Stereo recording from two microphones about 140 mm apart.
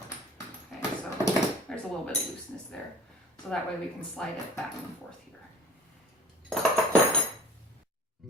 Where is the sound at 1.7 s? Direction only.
5° left (ahead or behind).